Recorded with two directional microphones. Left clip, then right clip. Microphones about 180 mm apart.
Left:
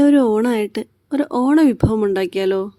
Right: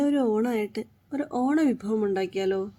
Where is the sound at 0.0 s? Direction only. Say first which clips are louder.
Left 10 dB; 55° left (ahead or behind).